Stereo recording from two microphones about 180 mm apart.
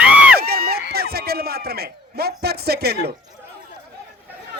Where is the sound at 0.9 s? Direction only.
60° right (ahead or behind).